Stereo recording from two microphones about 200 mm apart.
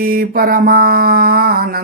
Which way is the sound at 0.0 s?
45° right (ahead or behind).